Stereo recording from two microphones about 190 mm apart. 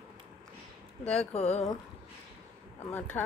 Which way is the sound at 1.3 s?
35° left (ahead or behind).